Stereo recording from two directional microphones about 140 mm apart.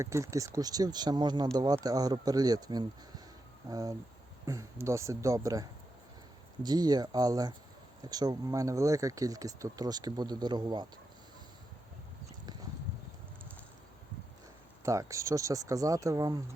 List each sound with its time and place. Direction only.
0.0 s speech: 20° right (ahead or behind)
14.8 s speech: 20° right (ahead or behind)